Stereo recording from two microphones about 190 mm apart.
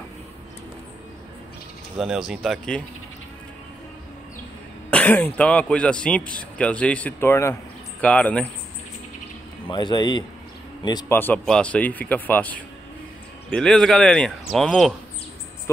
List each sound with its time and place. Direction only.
2.0 s speech: centre (ahead or behind)
4.9 s speech: 10° left (ahead or behind)
9.7 s a man's voice: 25° left (ahead or behind)
11.1 s speech: 10° left (ahead or behind)